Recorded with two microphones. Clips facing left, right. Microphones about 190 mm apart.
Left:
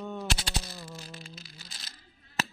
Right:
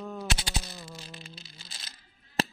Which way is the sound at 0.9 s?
20° right (ahead or behind).